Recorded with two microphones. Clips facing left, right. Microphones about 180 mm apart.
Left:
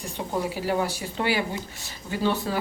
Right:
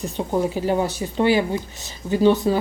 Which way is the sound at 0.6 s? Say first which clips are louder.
Right 5 dB; 20° right (ahead or behind).